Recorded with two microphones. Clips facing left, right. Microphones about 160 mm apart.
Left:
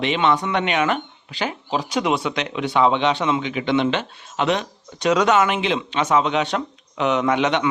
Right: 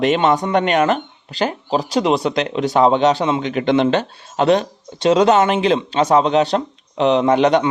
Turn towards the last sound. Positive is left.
turn(degrees=-35)  # may be behind; listen again after turning